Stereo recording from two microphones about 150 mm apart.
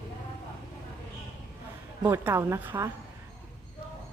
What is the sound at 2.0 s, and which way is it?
Speech, 15° right (ahead or behind).